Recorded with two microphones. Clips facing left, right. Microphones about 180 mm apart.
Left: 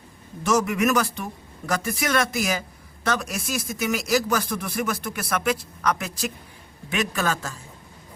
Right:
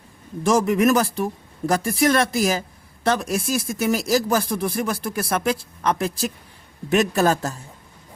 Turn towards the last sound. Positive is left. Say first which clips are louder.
# right 7 dB
turn(degrees=-40)  # may be behind; listen again after turning